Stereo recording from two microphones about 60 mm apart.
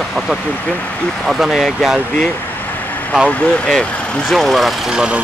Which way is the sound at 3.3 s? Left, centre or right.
Centre.